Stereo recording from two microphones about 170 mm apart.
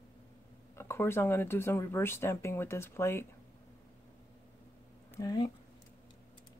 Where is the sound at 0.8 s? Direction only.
15° left (ahead or behind).